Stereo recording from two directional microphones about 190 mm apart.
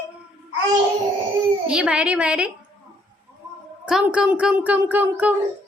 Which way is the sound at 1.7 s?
5° right (ahead or behind).